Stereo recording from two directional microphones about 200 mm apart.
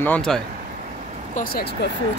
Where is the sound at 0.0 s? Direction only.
5° left (ahead or behind).